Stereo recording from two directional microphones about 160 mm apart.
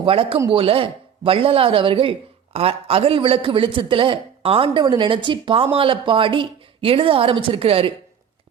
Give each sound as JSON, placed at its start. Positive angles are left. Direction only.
{"t": 0.0, "sound": "speech", "side_deg": -35}